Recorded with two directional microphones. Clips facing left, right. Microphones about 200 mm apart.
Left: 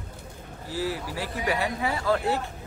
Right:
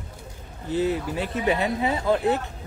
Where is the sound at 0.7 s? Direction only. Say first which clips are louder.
Right 6 dB; 20° right (ahead or behind).